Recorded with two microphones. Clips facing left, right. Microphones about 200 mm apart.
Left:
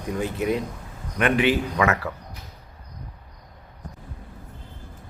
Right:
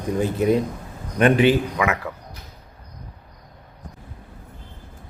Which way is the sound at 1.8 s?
10° right (ahead or behind).